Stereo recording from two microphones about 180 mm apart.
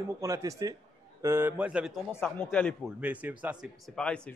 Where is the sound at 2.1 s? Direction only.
10° left (ahead or behind).